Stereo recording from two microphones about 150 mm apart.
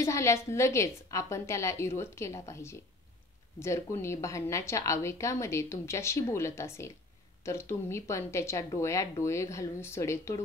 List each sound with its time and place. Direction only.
0.0 s a woman's voice: 20° left (ahead or behind)